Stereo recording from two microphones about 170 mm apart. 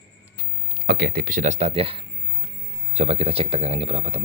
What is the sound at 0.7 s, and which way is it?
Speech, 70° right (ahead or behind).